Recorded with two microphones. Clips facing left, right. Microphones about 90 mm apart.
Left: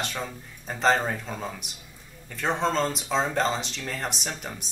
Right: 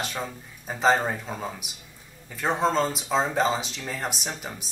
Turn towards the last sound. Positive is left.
turn(degrees=-5)  # may be behind; listen again after turning